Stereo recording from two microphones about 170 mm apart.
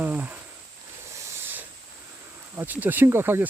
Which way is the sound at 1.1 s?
15° right (ahead or behind).